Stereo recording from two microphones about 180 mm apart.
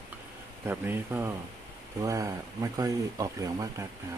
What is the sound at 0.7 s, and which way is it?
Speech, 10° right (ahead or behind).